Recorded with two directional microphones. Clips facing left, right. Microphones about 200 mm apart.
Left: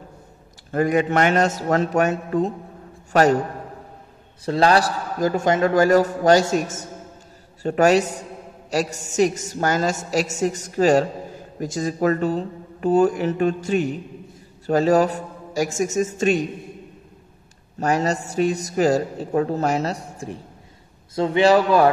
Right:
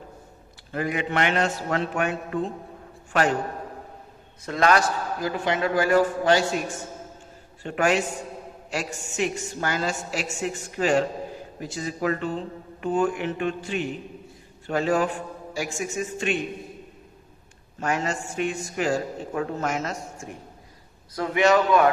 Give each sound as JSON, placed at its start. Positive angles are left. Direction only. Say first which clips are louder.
{"t": 0.7, "sound": "a man's voice", "louder": "left 8 dB", "side_deg": 45}
{"t": 4.5, "sound": "a man's voice", "louder": "left 4 dB", "side_deg": 30}
{"t": 17.7, "sound": "a man's voice", "louder": "left 6 dB", "side_deg": 40}